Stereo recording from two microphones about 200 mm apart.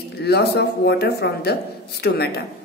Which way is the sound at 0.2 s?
55° left (ahead or behind).